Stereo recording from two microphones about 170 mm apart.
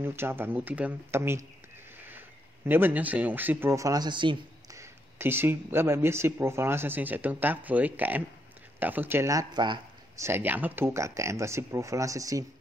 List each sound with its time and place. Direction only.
0.0 s speech: 15° right (ahead or behind)
4.7 s speech: 15° right (ahead or behind)
10.2 s speech: 10° right (ahead or behind)